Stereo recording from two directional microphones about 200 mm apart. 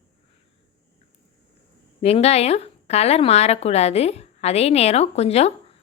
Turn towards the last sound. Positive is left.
turn(degrees=30)  # may be behind; listen again after turning